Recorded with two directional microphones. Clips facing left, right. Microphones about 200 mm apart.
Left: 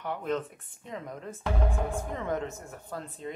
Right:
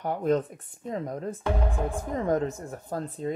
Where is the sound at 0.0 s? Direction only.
40° right (ahead or behind).